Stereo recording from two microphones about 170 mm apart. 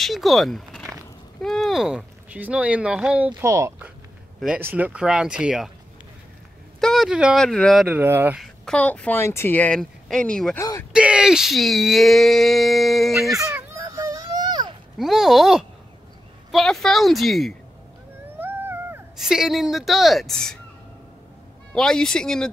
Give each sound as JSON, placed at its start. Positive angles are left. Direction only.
{"t": 0.0, "sound": "speech", "side_deg": 0}
{"t": 6.8, "sound": "speech", "side_deg": 0}
{"t": 8.0, "sound": "speech", "side_deg": -10}
{"t": 8.4, "sound": "speech", "side_deg": 5}
{"t": 10.6, "sound": "speech", "side_deg": 20}
{"t": 10.9, "sound": "speech", "side_deg": -5}
{"t": 13.5, "sound": "baby cry", "side_deg": -15}
{"t": 15.0, "sound": "speech", "side_deg": 0}
{"t": 18.4, "sound": "dog", "side_deg": -10}
{"t": 19.1, "sound": "speech", "side_deg": -5}
{"t": 21.7, "sound": "speech", "side_deg": 5}